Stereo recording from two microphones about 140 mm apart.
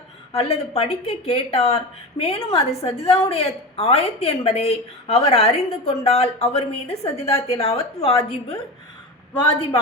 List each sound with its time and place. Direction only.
0.3 s a woman's voice: 45° left (ahead or behind)